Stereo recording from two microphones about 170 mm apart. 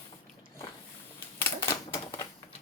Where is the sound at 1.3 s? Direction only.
15° left (ahead or behind).